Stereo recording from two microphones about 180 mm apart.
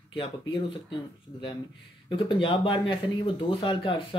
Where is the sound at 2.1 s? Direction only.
30° left (ahead or behind).